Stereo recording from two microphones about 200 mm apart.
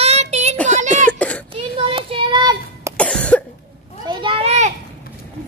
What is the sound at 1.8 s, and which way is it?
Child singing, 25° right (ahead or behind).